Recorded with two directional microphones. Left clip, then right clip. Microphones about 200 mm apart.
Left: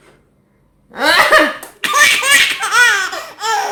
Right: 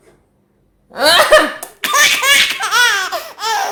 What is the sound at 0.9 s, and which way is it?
Laughter, 45° right (ahead or behind).